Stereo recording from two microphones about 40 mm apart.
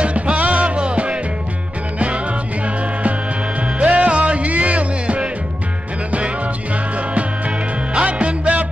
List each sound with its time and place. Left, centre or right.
0.0 s music: right
3.8 s music: right
7.2 s music: right